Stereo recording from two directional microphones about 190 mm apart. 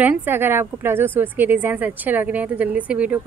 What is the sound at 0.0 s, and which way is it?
A woman's voice, 10° right (ahead or behind).